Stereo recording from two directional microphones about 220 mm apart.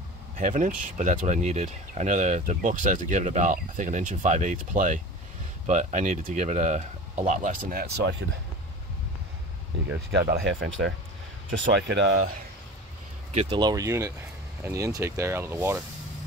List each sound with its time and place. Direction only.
0.4 s speech: 35° right (ahead or behind); by 8.4 s 50° right (ahead or behind)
10.4 s speech: 60° right (ahead or behind)
13.3 s speech: 25° right (ahead or behind)